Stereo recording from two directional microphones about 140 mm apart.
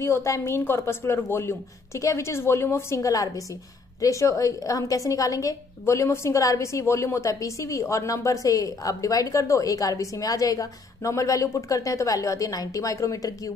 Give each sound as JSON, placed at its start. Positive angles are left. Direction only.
{"t": 0.0, "sound": "a woman's voice", "side_deg": 20}